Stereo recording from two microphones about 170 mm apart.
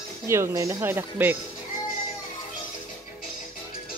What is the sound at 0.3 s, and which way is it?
Speech, 15° right (ahead or behind).